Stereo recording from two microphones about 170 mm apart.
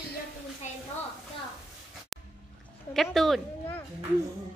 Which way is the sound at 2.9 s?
Centre (ahead or behind).